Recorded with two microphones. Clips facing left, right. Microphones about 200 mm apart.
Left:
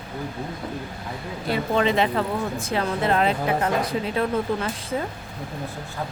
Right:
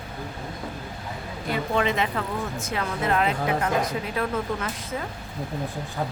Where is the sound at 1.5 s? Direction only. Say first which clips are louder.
Left 3 dB; 30° left (ahead or behind).